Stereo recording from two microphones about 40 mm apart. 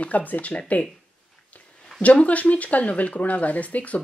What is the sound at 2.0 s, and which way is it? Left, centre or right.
Speech, left.